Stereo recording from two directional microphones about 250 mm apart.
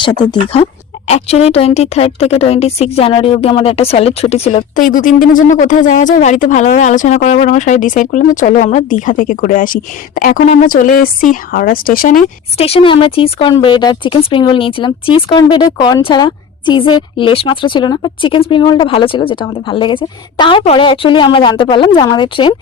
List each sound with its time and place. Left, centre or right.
0.0 s speech: centre